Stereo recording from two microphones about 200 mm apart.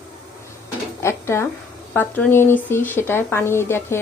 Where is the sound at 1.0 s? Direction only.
15° left (ahead or behind).